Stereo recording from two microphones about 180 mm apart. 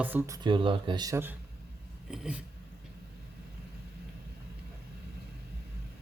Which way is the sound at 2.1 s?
5° right (ahead or behind).